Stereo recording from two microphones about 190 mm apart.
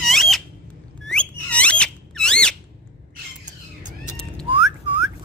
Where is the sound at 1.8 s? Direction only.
5° left (ahead or behind).